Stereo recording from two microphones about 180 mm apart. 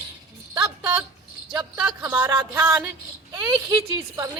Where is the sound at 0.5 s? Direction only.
25° right (ahead or behind).